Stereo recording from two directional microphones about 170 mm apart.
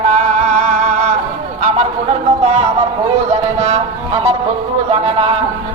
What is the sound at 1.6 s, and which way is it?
Speech, 40° right (ahead or behind).